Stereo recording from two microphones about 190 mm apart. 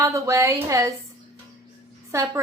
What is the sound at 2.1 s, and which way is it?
Speech, 15° right (ahead or behind).